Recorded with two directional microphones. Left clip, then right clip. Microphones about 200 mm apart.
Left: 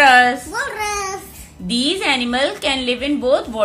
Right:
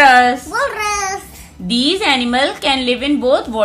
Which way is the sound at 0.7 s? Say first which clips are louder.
Right 4 dB; 55° right (ahead or behind).